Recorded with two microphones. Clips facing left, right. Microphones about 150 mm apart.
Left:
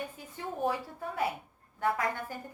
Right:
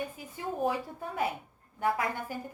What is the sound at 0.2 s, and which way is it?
A woman's voice, 15° right (ahead or behind).